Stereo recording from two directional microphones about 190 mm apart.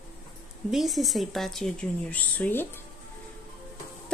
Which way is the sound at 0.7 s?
Centre (ahead or behind).